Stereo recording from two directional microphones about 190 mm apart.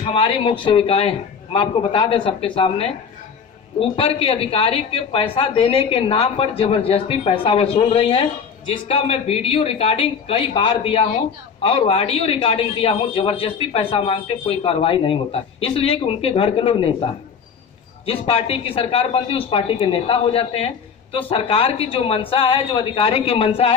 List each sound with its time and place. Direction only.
0.0 s a woman's voice: 25° left (ahead or behind)